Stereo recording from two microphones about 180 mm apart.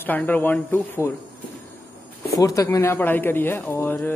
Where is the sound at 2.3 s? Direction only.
20° left (ahead or behind).